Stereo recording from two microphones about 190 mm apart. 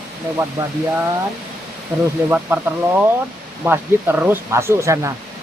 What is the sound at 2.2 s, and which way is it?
Speech, 10° right (ahead or behind).